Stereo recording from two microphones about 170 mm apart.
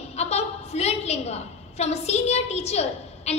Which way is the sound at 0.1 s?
40° left (ahead or behind).